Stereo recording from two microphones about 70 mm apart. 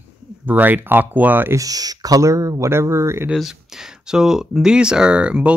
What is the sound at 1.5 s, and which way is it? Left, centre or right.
Speech, right.